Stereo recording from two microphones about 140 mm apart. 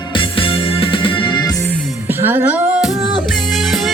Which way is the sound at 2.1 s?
15° right (ahead or behind).